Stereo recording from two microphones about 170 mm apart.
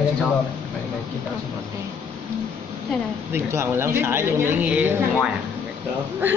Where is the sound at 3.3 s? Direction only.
15° right (ahead or behind).